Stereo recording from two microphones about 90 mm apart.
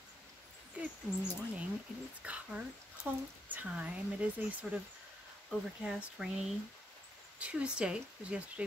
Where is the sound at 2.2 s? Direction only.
15° right (ahead or behind).